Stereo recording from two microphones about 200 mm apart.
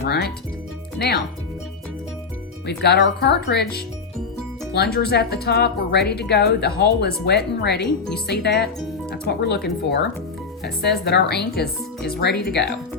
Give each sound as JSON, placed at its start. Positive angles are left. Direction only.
{"t": 0.0, "sound": "speech", "side_deg": 55}
{"t": 2.6, "sound": "speech", "side_deg": 55}
{"t": 5.0, "sound": "speech", "side_deg": 55}
{"t": 11.0, "sound": "speech", "side_deg": 55}